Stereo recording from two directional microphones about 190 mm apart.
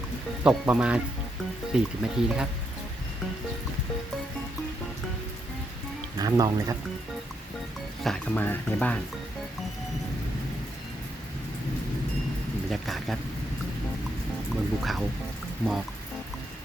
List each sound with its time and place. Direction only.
0.4 s speech: 5° right (ahead or behind)
6.1 s speech: 20° right (ahead or behind)
8.0 s speech: 5° left (ahead or behind)
12.8 s speech: centre (ahead or behind)
14.5 s speech: centre (ahead or behind)